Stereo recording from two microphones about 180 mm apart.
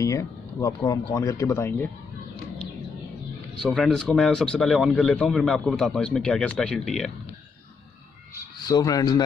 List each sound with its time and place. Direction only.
0.0 s speech: 15° left (ahead or behind)
3.6 s speech: centre (ahead or behind)
8.5 s a man's voice: 20° left (ahead or behind)